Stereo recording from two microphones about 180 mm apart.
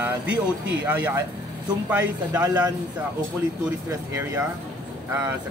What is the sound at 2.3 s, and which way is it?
Speech, 20° right (ahead or behind).